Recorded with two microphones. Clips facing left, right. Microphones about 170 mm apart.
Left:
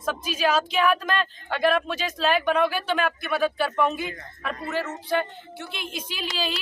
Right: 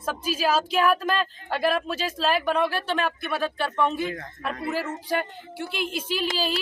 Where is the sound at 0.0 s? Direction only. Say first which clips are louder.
Left 1 dB; 5° right (ahead or behind).